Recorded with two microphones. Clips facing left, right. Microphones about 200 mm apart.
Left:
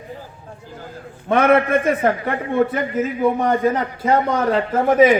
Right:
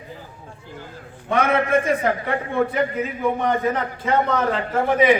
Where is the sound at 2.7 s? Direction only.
40° left (ahead or behind).